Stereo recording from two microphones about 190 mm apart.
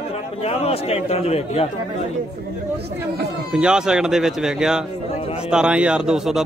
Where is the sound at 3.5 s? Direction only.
5° right (ahead or behind).